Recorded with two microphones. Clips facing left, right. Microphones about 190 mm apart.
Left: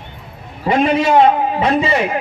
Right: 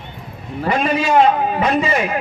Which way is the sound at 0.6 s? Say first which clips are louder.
Left 4 dB; 25° left (ahead or behind).